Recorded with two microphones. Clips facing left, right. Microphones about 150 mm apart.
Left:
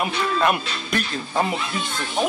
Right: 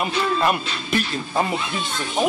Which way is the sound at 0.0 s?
Centre (ahead or behind).